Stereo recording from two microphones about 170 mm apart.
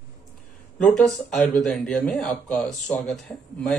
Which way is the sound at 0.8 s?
5° left (ahead or behind).